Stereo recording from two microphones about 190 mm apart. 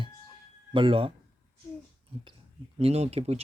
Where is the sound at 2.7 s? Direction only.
35° right (ahead or behind).